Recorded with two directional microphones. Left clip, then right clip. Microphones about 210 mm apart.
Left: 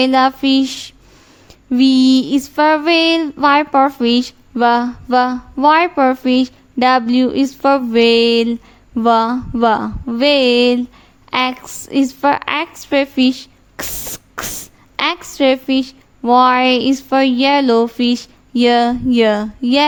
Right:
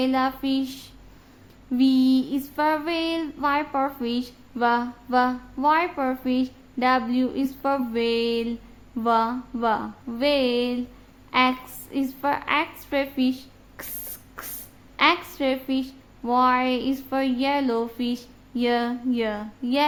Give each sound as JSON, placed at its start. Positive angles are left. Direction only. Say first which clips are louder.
{"t": 0.0, "sound": "female singing", "louder": "left 11 dB", "side_deg": 35}
{"t": 14.4, "sound": "a sound", "louder": "left 14 dB", "side_deg": 40}
{"t": 14.9, "sound": "female singing", "louder": "left 3 dB", "side_deg": 40}